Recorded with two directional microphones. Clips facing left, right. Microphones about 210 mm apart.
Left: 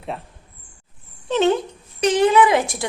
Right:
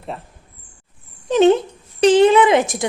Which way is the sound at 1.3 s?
15° right (ahead or behind).